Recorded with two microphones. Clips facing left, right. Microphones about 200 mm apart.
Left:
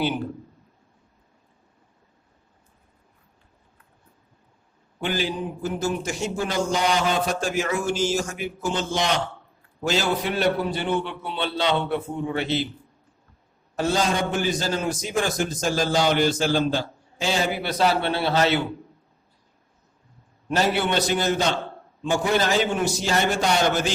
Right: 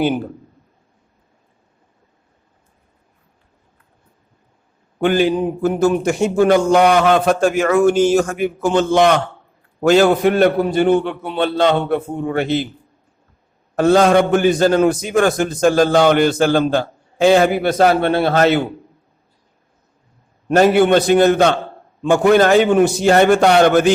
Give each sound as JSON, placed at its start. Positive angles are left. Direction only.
{"t": 4.9, "sound": "a man's voice", "side_deg": -55}
{"t": 13.7, "sound": "a man's voice", "side_deg": -60}
{"t": 20.5, "sound": "a man's voice", "side_deg": -55}